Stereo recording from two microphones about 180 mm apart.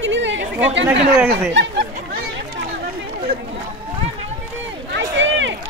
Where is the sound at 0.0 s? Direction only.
90° right.